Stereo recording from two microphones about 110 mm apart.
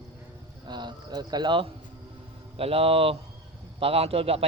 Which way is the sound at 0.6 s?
40° right (ahead or behind).